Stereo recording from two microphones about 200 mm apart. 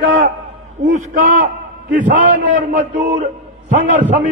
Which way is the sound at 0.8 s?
40° right (ahead or behind).